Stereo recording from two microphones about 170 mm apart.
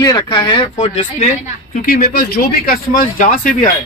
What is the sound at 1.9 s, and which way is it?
Speech, 60° left (ahead or behind).